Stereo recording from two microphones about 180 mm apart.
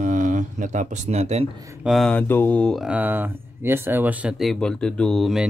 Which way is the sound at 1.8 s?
Centre (ahead or behind).